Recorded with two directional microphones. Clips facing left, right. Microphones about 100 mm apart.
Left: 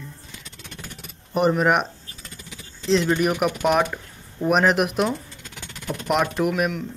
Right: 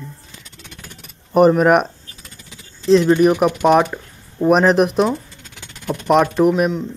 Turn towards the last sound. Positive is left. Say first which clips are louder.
# right 7 dB
turn(degrees=-35)  # may be behind; listen again after turning